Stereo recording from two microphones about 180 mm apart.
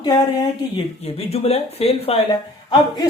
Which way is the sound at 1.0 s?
35° left (ahead or behind).